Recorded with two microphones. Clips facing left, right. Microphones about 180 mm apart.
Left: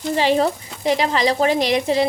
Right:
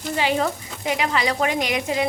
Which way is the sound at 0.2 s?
35° left (ahead or behind).